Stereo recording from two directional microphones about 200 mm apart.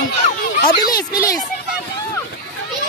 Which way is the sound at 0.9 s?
45° left (ahead or behind).